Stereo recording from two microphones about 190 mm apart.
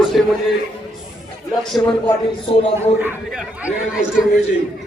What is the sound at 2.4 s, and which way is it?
Speech, 30° left (ahead or behind).